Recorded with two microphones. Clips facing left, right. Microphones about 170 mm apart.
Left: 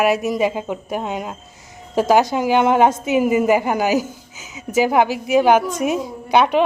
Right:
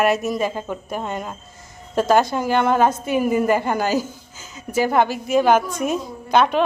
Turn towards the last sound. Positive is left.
turn(degrees=15)  # may be behind; listen again after turning